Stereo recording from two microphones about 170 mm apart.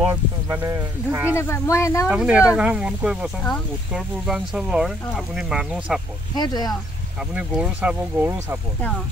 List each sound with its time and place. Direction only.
0.0 s speech: 15° right (ahead or behind)
1.3 s speech: 15° left (ahead or behind)
2.0 s speech: 5° right (ahead or behind)
6.3 s speech: 25° left (ahead or behind)
7.3 s speech: 10° right (ahead or behind)